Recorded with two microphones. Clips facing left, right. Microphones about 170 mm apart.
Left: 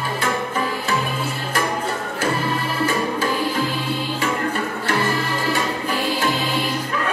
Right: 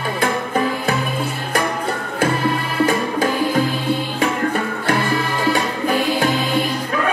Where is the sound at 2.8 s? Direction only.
50° right (ahead or behind).